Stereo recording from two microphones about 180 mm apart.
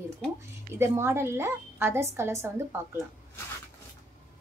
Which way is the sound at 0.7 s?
15° right (ahead or behind).